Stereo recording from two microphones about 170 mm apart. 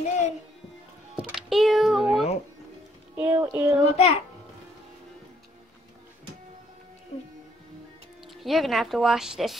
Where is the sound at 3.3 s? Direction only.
10° right (ahead or behind).